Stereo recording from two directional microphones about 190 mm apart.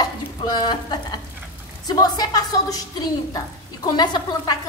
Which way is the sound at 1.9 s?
20° left (ahead or behind).